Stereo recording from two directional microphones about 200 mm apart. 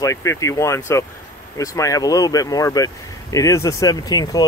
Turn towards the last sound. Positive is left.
turn(degrees=20)  # may be behind; listen again after turning